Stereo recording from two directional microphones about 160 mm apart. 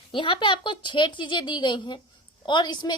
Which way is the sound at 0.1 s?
30° left (ahead or behind).